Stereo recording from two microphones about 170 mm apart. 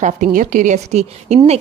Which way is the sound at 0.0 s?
50° right (ahead or behind).